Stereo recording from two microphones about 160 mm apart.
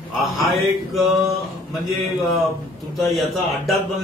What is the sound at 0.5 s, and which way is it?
A man's voice, centre (ahead or behind).